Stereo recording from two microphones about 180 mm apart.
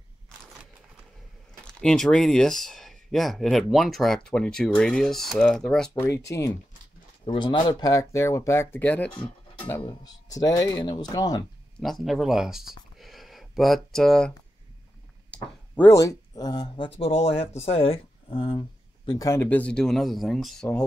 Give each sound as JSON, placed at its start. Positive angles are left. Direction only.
{"t": 1.6, "sound": "speech", "side_deg": 5}
{"t": 5.9, "sound": "speech", "side_deg": 15}
{"t": 7.2, "sound": "speech", "side_deg": 25}
{"t": 9.8, "sound": "speech", "side_deg": 20}
{"t": 11.8, "sound": "speech", "side_deg": 0}
{"t": 13.0, "sound": "a sound", "side_deg": 0}
{"t": 15.8, "sound": "speech", "side_deg": 15}